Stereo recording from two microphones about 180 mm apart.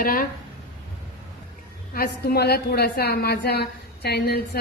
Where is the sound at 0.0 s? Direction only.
55° left (ahead or behind).